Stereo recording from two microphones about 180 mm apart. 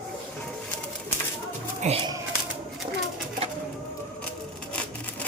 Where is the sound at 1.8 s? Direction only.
35° right (ahead or behind).